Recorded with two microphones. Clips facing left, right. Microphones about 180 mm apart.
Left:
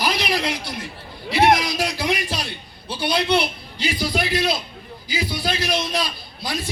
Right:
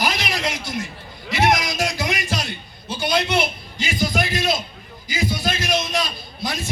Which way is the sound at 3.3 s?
45° right (ahead or behind).